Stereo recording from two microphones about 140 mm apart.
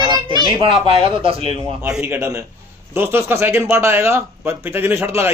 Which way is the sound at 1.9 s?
10° right (ahead or behind).